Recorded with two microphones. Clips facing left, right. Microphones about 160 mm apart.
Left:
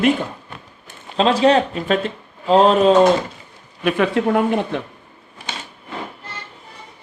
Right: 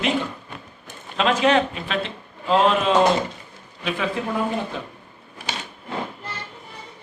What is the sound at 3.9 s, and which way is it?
Speech, 65° left (ahead or behind).